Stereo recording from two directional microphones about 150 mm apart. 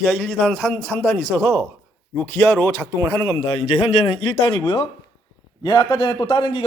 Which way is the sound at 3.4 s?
40° left (ahead or behind).